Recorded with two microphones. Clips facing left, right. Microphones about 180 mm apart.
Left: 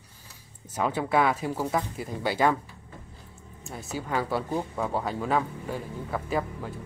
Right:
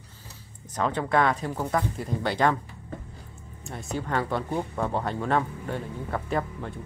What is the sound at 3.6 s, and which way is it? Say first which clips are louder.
Speech: right 2 dB; centre (ahead or behind).